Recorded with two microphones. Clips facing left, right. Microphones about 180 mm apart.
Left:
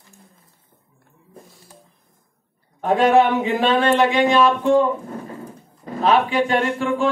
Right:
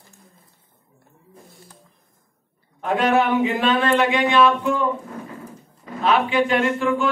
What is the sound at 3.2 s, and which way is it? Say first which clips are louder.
Speech: left 3 dB; 35° left (ahead or behind).